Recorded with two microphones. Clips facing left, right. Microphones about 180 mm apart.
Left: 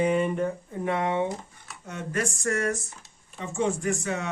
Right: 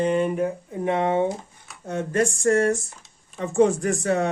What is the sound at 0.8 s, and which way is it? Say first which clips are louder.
Speech: right 5 dB; 25° right (ahead or behind).